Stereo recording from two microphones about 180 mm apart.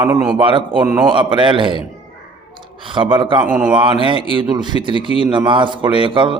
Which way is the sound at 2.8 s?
25° right (ahead or behind).